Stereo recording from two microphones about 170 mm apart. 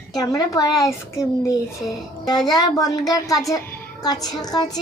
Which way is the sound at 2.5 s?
20° left (ahead or behind).